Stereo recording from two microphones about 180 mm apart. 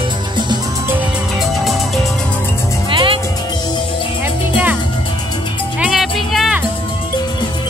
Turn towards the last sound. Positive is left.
turn(degrees=0)  # may be behind; listen again after turning